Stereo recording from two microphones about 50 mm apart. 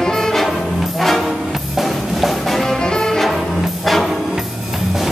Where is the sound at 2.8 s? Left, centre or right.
Centre.